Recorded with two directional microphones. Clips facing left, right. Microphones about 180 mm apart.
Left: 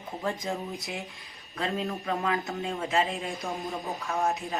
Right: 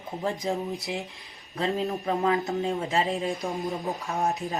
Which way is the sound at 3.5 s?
20° right (ahead or behind).